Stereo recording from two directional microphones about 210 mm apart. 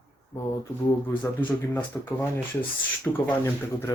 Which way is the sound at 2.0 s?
10° left (ahead or behind).